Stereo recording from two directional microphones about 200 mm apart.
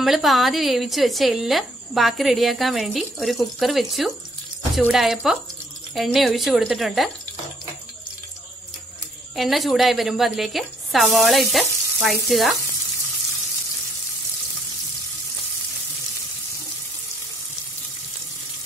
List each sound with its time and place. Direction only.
0.0 s speech: centre (ahead or behind)
9.3 s speech: centre (ahead or behind)